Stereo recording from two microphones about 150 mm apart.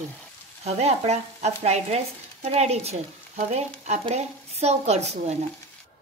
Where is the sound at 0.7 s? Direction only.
45° right (ahead or behind).